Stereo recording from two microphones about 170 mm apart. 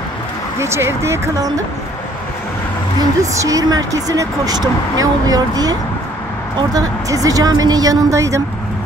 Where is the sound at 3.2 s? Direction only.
20° right (ahead or behind).